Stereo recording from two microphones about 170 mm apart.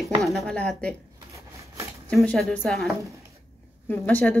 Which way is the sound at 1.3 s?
20° right (ahead or behind).